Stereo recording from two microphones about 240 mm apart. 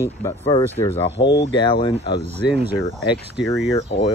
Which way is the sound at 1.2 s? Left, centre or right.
Left.